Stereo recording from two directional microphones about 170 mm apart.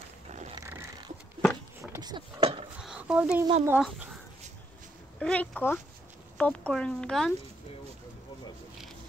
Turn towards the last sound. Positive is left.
turn(degrees=5)  # may be behind; listen again after turning